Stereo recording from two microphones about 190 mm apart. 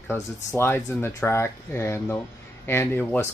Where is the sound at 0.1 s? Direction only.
10° left (ahead or behind).